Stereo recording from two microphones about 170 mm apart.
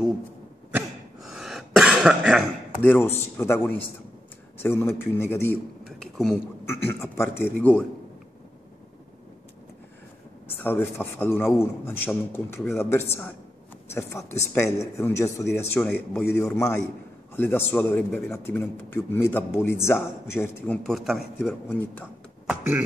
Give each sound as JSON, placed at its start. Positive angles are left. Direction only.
{"t": 0.7, "sound": "cough", "side_deg": 0}
{"t": 2.8, "sound": "a man's voice", "side_deg": 10}
{"t": 6.1, "sound": "speech", "side_deg": 0}
{"t": 6.6, "sound": "a man's voice", "side_deg": 15}
{"t": 10.6, "sound": "a man's voice", "side_deg": 10}
{"t": 22.5, "sound": "speech", "side_deg": -5}